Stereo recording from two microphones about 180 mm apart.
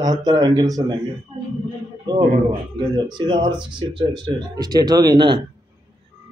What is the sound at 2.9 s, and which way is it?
Speech, 25° right (ahead or behind).